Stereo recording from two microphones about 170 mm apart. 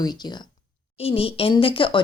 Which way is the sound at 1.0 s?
35° left (ahead or behind).